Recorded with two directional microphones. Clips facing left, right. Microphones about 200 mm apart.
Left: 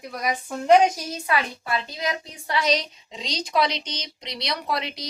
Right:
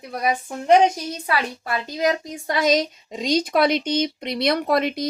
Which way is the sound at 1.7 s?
45° right (ahead or behind).